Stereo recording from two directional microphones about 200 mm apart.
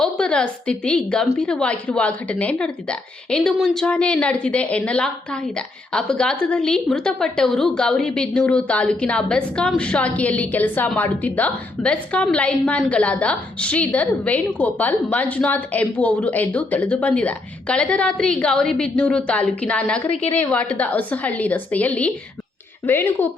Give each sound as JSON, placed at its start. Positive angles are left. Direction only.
{"t": 0.0, "sound": "a woman's voice", "side_deg": 5}